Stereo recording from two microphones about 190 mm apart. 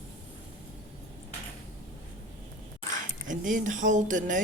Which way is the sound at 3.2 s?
40° right (ahead or behind).